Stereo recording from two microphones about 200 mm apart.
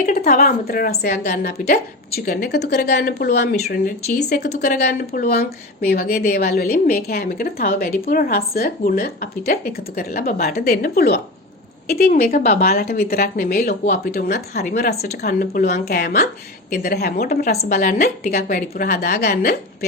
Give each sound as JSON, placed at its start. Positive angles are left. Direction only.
{"t": 0.0, "sound": "a woman's voice", "side_deg": 35}